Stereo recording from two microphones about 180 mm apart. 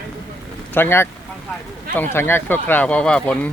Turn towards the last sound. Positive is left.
turn(degrees=5)  # may be behind; listen again after turning